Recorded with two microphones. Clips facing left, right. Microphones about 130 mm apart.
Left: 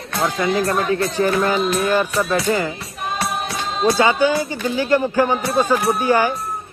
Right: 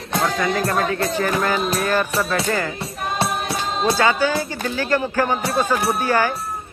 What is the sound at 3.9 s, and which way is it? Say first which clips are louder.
A man's voice: left 3 dB; 20° left (ahead or behind).